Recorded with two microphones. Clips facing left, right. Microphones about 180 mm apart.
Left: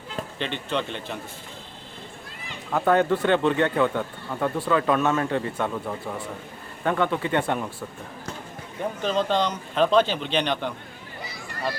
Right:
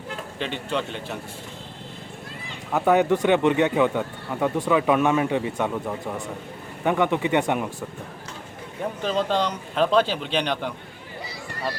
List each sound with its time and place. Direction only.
0.3 s speech: 5° right (ahead or behind)
2.7 s speech: 10° right (ahead or behind)
9.0 s speech: 5° right (ahead or behind)